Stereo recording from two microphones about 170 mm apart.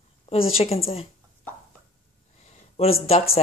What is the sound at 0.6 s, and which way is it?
Speech, 35° left (ahead or behind).